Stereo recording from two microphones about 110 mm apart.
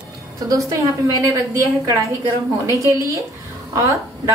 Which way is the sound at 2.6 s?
25° right (ahead or behind).